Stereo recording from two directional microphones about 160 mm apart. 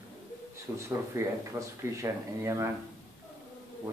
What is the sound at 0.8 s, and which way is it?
Speech, 20° right (ahead or behind).